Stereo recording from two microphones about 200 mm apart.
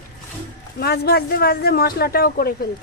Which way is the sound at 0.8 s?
50° left (ahead or behind).